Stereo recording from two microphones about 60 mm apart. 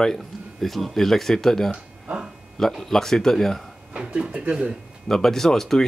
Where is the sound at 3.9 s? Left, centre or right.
Centre.